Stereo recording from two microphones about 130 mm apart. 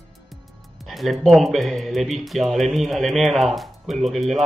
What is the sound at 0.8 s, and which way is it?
Speech, centre (ahead or behind).